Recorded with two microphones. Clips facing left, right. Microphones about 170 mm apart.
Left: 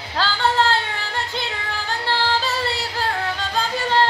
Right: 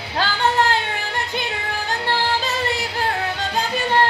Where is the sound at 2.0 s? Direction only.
20° right (ahead or behind).